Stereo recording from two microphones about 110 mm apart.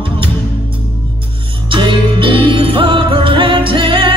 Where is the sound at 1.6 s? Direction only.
50° right (ahead or behind).